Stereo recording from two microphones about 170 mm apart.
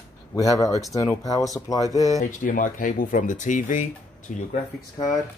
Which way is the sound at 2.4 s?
50° left (ahead or behind).